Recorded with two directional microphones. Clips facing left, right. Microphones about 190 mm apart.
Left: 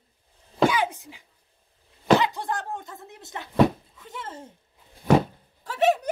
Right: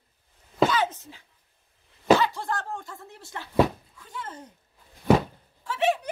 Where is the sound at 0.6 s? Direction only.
10° left (ahead or behind).